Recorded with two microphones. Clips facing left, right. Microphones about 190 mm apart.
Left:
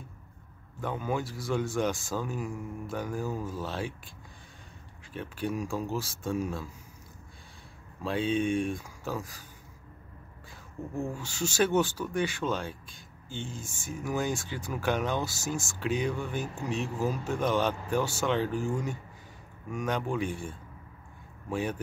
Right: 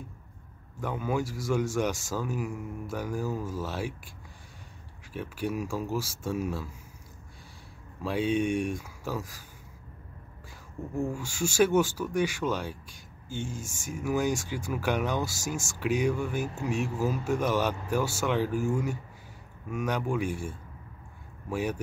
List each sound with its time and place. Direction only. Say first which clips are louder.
0.7 s speech: right 2 dB; 10° right (ahead or behind)
5.1 s speech: right 1 dB; 10° right (ahead or behind)
8.0 s speech: right 1 dB; 10° right (ahead or behind)
11.0 s speech: right 3 dB; 10° right (ahead or behind)